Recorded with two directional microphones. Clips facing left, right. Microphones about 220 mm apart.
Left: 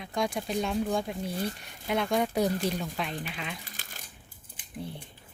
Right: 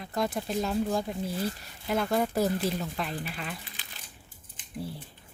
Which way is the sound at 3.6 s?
45° left (ahead or behind).